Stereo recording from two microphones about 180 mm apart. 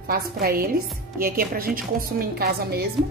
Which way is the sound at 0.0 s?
55° right (ahead or behind).